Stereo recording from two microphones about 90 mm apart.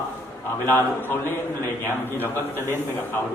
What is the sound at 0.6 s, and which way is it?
A man's voice, 25° left (ahead or behind).